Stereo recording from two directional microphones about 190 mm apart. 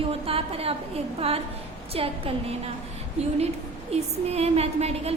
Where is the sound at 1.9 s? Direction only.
30° right (ahead or behind).